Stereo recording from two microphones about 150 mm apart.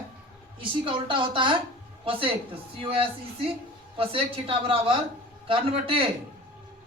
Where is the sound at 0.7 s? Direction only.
35° right (ahead or behind).